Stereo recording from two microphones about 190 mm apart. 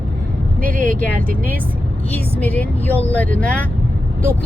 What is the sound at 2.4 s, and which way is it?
Speech, 10° left (ahead or behind).